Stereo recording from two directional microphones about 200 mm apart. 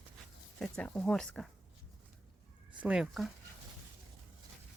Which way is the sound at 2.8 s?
5° right (ahead or behind).